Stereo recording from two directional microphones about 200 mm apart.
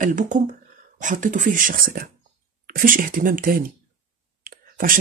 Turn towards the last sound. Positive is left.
turn(degrees=-45)  # may be behind; listen again after turning